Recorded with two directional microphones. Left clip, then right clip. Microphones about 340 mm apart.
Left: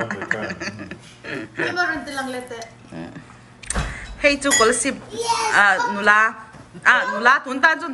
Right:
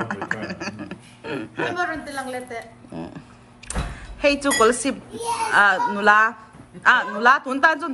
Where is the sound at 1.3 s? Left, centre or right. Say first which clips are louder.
Left 1 dB; centre.